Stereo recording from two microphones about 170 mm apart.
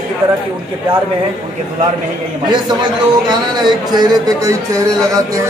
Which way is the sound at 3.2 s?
25° right (ahead or behind).